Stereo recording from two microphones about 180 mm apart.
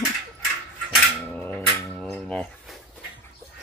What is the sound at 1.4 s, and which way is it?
Music, 5° left (ahead or behind).